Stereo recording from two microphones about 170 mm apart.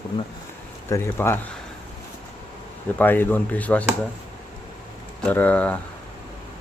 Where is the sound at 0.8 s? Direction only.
15° left (ahead or behind).